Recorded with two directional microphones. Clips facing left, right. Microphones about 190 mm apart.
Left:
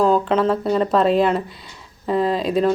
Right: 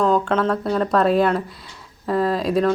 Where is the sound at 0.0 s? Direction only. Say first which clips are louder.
Left 2 dB; 5° left (ahead or behind).